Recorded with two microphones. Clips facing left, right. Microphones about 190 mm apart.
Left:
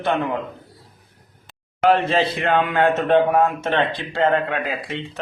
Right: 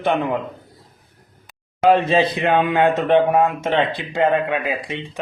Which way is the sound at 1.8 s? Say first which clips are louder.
Right 2 dB; 15° right (ahead or behind).